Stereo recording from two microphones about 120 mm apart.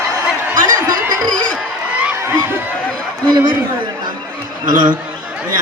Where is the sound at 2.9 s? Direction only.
5° left (ahead or behind).